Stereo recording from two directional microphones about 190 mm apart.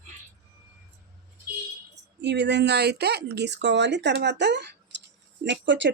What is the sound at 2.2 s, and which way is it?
Speech, 65° right (ahead or behind).